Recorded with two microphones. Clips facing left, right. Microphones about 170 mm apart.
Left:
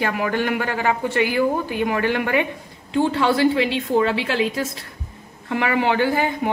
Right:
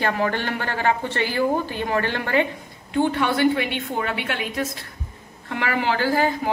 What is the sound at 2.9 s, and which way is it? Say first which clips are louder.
Speech: left 2 dB; 25° left (ahead or behind).